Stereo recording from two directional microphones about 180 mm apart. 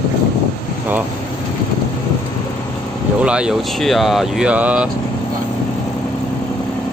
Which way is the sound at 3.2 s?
5° right (ahead or behind).